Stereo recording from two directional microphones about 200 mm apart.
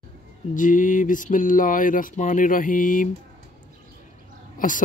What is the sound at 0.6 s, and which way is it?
Speech, 40° left (ahead or behind).